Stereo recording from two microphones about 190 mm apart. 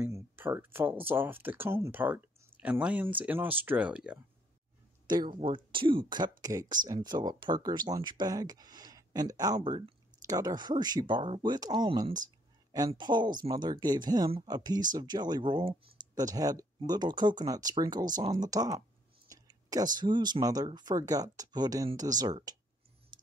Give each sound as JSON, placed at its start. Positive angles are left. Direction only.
{"t": 0.0, "sound": "speech", "side_deg": -10}
{"t": 5.0, "sound": "speech", "side_deg": -25}
{"t": 23.1, "sound": "a sound", "side_deg": -25}